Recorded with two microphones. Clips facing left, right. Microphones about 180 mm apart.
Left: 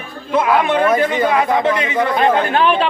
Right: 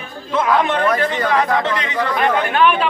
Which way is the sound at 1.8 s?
20° left (ahead or behind).